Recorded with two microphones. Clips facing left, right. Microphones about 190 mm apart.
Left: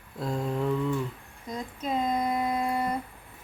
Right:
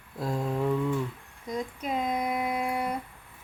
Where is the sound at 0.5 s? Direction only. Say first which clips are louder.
Right 1 dB; 15° right (ahead or behind).